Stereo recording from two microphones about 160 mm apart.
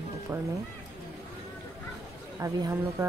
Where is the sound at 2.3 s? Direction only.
20° right (ahead or behind).